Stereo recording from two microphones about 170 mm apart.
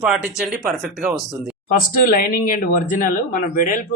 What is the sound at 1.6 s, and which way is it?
Speech, 55° left (ahead or behind).